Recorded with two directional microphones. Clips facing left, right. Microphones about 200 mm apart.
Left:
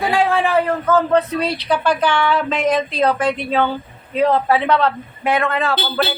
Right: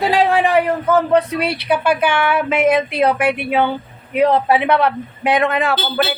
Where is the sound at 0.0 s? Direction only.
20° right (ahead or behind).